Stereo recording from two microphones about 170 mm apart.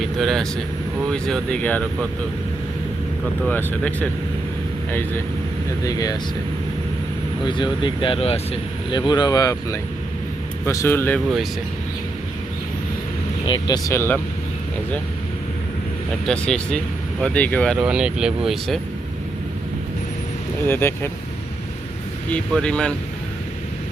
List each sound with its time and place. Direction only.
0.0 s speech: centre (ahead or behind)
3.4 s speech: 10° left (ahead or behind)
7.4 s speech: 30° left (ahead or behind); by 11.2 s 10° left (ahead or behind)
13.5 s speech: 25° left (ahead or behind)
16.2 s speech: 5° left (ahead or behind)
17.7 s speech: 5° right (ahead or behind)
20.7 s speech: 15° left (ahead or behind)
22.3 s speech: 5° left (ahead or behind)